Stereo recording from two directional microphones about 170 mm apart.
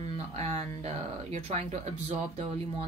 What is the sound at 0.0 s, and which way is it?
A woman's voice, 40° right (ahead or behind).